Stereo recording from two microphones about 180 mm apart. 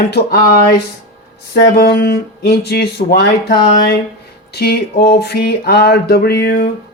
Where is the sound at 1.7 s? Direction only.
60° left (ahead or behind).